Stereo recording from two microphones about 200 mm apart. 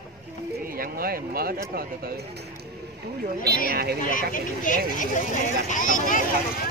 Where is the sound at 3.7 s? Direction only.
50° right (ahead or behind).